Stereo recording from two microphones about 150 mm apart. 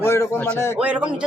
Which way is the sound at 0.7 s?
5° right (ahead or behind).